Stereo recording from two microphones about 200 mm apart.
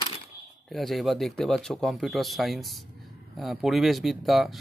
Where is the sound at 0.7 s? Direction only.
Centre (ahead or behind).